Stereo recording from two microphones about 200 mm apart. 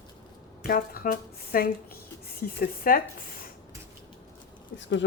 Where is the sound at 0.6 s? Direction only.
45° left (ahead or behind).